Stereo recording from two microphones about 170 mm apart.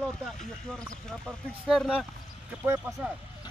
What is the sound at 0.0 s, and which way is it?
Speech, 5° left (ahead or behind).